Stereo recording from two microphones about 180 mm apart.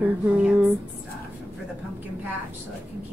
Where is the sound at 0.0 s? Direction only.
10° right (ahead or behind).